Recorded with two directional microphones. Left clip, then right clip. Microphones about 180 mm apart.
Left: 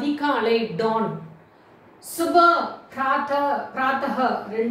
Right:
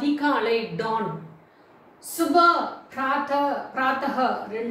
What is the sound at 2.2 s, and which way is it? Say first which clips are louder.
A woman's voice: left 2 dB; centre (ahead or behind).